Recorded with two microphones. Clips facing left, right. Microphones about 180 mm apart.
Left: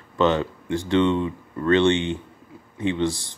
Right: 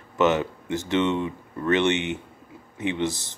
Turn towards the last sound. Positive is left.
turn(degrees=-20)  # may be behind; listen again after turning